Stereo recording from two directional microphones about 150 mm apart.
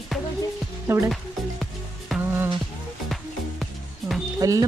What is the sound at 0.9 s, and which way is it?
Speech, 15° right (ahead or behind).